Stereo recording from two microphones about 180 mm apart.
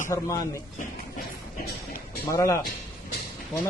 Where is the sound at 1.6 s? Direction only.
55° left (ahead or behind).